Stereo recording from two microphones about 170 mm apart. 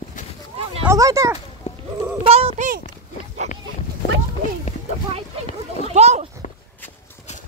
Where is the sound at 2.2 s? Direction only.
40° right (ahead or behind).